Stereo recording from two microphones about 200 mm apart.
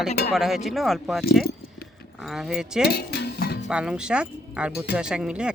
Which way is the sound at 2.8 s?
55° left (ahead or behind).